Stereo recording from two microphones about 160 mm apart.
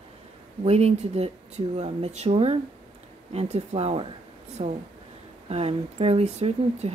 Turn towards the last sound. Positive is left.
turn(degrees=-40)  # may be behind; listen again after turning